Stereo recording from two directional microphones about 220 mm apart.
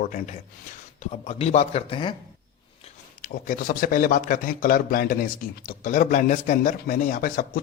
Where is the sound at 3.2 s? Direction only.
40° left (ahead or behind).